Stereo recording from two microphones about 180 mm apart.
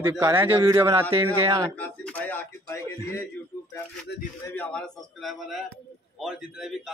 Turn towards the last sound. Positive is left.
turn(degrees=0)  # may be behind; listen again after turning